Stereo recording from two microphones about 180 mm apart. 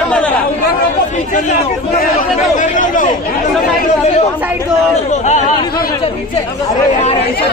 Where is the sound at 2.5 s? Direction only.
45° left (ahead or behind).